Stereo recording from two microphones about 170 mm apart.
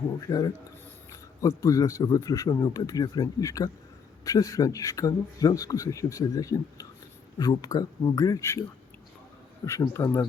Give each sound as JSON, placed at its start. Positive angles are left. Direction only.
{"t": 0.2, "sound": "speech", "side_deg": 20}
{"t": 9.6, "sound": "speech", "side_deg": 15}